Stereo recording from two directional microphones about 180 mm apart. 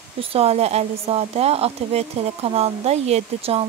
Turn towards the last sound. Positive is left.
turn(degrees=-35)  # may be behind; listen again after turning